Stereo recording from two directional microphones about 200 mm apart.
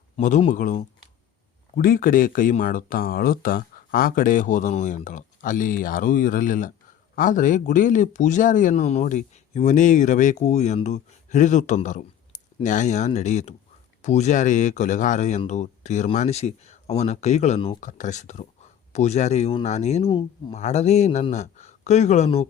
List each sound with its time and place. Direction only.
0.2 s speech: 40° left (ahead or behind)